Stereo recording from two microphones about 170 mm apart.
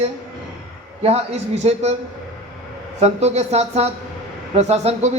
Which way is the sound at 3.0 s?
40° right (ahead or behind).